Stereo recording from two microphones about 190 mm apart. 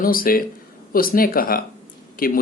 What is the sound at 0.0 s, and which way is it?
Speech, 50° left (ahead or behind).